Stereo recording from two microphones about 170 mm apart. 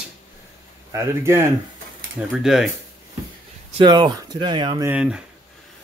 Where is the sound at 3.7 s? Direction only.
25° right (ahead or behind).